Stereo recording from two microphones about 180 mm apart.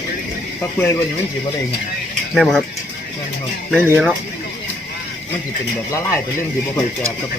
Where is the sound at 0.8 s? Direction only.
15° left (ahead or behind).